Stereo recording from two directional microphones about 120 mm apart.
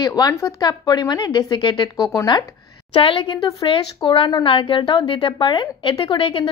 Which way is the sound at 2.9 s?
50° left (ahead or behind).